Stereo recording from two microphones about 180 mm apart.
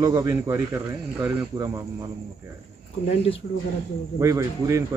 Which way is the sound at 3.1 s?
35° left (ahead or behind).